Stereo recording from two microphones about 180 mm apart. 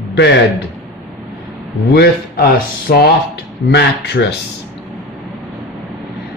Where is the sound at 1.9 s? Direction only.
60° left (ahead or behind).